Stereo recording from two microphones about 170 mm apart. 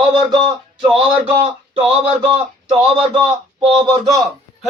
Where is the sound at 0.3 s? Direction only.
25° right (ahead or behind).